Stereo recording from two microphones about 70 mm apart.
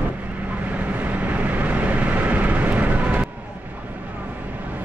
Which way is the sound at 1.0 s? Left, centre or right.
Right.